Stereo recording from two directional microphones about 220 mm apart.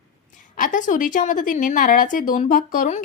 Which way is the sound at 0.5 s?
35° left (ahead or behind).